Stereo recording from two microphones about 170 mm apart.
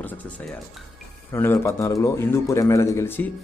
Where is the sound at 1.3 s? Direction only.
15° left (ahead or behind).